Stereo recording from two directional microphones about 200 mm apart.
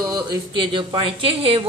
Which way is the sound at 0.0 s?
20° right (ahead or behind).